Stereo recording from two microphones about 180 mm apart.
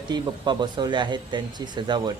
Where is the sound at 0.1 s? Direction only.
25° right (ahead or behind).